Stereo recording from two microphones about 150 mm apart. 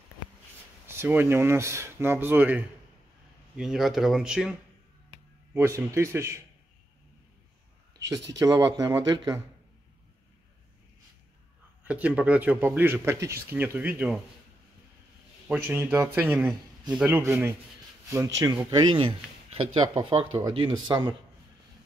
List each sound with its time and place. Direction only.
0.8 s speech: 15° right (ahead or behind)
5.5 s speech: 20° right (ahead or behind)
8.1 s speech: 25° right (ahead or behind)
11.8 s speech: 10° right (ahead or behind)
15.4 s speech: 10° right (ahead or behind); by 21.1 s 30° right (ahead or behind)